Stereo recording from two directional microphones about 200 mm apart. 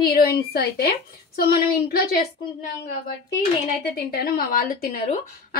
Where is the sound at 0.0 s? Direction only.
50° left (ahead or behind).